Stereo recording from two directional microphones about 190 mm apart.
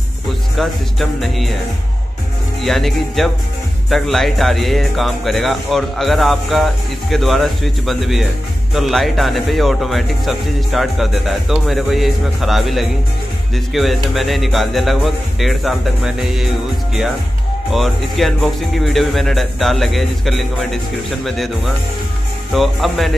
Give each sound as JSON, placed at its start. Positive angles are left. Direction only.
{"t": 0.6, "sound": "speech", "side_deg": 0}
{"t": 2.6, "sound": "speech", "side_deg": 0}
{"t": 17.6, "sound": "speech", "side_deg": 0}